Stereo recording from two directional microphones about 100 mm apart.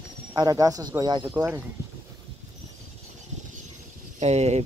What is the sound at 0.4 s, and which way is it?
Speech, 35° right (ahead or behind).